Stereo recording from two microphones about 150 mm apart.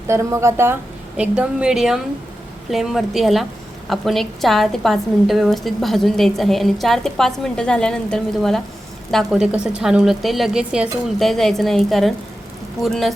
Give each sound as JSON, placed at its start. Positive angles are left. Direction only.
{"t": 0.1, "sound": "a woman's voice", "side_deg": -20}